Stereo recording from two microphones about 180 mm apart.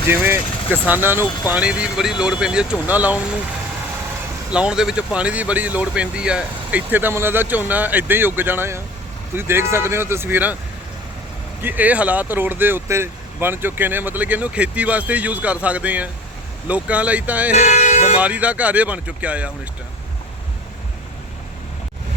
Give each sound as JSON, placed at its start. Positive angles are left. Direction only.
{"t": 0.1, "sound": "speech", "side_deg": -10}
{"t": 4.5, "sound": "speech", "side_deg": -5}
{"t": 11.6, "sound": "speech", "side_deg": -10}
{"t": 17.6, "sound": "speech", "side_deg": 40}
{"t": 18.2, "sound": "speech", "side_deg": -10}